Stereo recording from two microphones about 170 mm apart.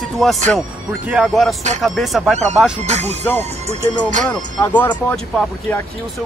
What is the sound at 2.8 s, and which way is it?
Speech, 40° right (ahead or behind).